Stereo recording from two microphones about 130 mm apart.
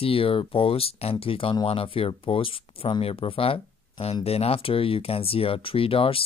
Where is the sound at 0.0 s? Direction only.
45° left (ahead or behind).